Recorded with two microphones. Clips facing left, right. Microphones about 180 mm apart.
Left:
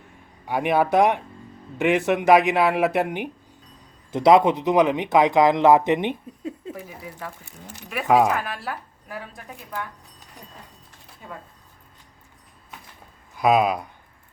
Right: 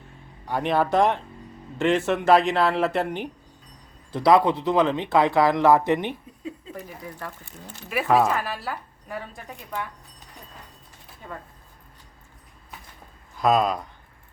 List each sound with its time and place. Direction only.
0.4 s speech: 10° left (ahead or behind)
6.7 s speech: 5° left (ahead or behind)
8.4 s speech: centre (ahead or behind)
11.2 s speech: 5° left (ahead or behind)
13.3 s speech: 10° left (ahead or behind)